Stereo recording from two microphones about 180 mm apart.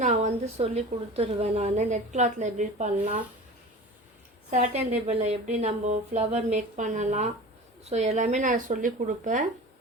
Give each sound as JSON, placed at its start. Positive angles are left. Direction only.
{"t": 0.0, "sound": "a woman's voice", "side_deg": -40}
{"t": 4.5, "sound": "a woman's voice", "side_deg": -40}